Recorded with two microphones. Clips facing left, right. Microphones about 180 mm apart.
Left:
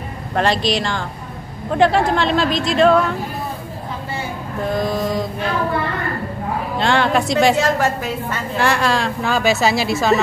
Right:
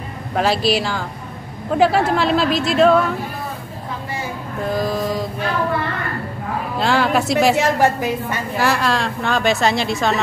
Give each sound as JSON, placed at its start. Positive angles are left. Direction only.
{"t": 0.3, "sound": "a woman's voice", "side_deg": -5}
{"t": 4.7, "sound": "mantra", "side_deg": 0}
{"t": 6.8, "sound": "a woman's voice", "side_deg": -5}
{"t": 8.5, "sound": "a woman's voice", "side_deg": 0}